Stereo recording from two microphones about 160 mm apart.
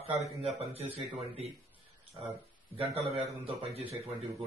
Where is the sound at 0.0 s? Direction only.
40° right (ahead or behind).